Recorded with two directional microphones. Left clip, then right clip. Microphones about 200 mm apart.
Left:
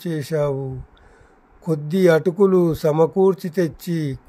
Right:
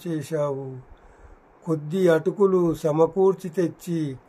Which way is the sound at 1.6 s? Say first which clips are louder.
Left 4 dB; 45° left (ahead or behind).